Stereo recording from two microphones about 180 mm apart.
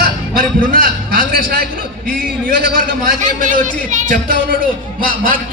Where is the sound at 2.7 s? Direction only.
55° right (ahead or behind).